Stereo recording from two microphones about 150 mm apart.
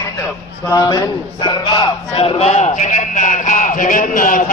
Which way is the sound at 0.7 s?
30° left (ahead or behind).